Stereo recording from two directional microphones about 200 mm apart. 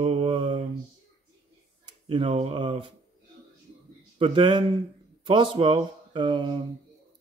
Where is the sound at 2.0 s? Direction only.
30° right (ahead or behind).